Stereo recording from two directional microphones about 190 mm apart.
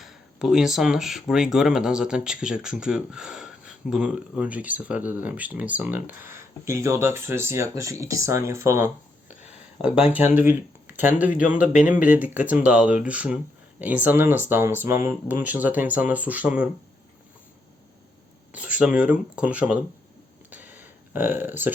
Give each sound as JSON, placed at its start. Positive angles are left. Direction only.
{"t": 0.0, "sound": "speech", "side_deg": 0}
{"t": 9.3, "sound": "a sound", "side_deg": 40}
{"t": 10.1, "sound": "speech", "side_deg": -10}
{"t": 11.7, "sound": "speech", "side_deg": 40}
{"t": 12.0, "sound": "speech", "side_deg": -10}
{"t": 18.8, "sound": "speech", "side_deg": -5}
{"t": 20.5, "sound": "a sound", "side_deg": -10}